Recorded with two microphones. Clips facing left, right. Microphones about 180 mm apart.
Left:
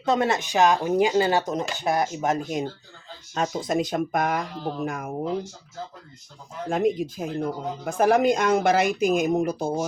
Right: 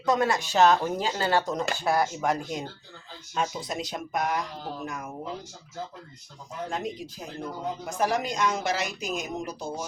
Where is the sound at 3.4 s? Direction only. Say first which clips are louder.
Left 6 dB; 50° left (ahead or behind).